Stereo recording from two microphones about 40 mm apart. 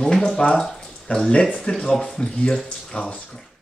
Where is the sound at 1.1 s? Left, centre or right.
Left.